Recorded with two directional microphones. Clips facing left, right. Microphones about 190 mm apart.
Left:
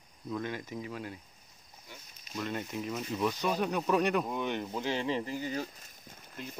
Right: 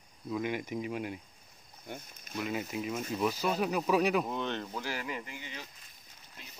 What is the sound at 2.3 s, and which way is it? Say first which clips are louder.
Speech: right 1 dB; 5° right (ahead or behind).